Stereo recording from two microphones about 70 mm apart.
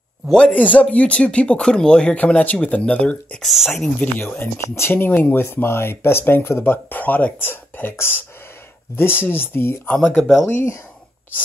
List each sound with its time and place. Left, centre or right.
0.5 s speech: left
3.4 s speech: centre
4.0 s speech: left
4.6 s speech: left
4.9 s speech: left
10.5 s speech: left